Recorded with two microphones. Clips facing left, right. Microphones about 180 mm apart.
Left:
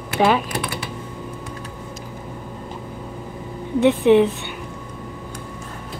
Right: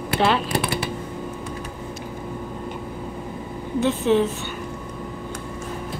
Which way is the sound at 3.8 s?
15° left (ahead or behind).